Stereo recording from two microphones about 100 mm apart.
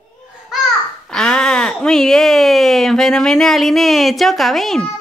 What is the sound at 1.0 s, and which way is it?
Speech, 5° left (ahead or behind).